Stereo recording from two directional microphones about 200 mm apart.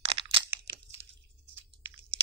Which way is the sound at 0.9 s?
35° right (ahead or behind).